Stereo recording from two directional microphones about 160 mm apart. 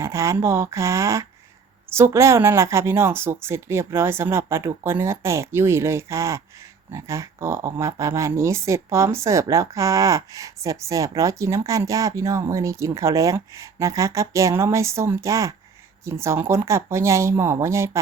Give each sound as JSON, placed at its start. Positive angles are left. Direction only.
{"t": 0.0, "sound": "speech", "side_deg": -20}